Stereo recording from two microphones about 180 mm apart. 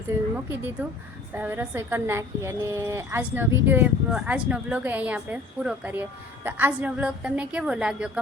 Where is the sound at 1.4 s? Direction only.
10° right (ahead or behind).